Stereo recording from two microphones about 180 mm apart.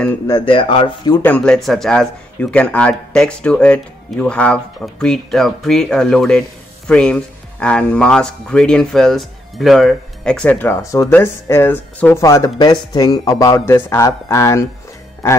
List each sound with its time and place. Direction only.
0.3 s speech: 30° left (ahead or behind)
1.2 s speech: 5° left (ahead or behind)